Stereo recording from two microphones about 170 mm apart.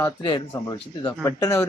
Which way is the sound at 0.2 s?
30° left (ahead or behind).